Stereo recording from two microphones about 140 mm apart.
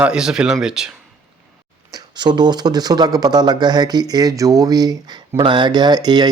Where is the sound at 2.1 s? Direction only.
30° right (ahead or behind).